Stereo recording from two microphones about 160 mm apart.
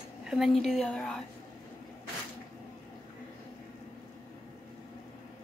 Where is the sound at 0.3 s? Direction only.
Centre (ahead or behind).